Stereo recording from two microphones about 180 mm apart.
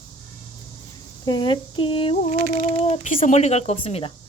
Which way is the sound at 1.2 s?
25° left (ahead or behind).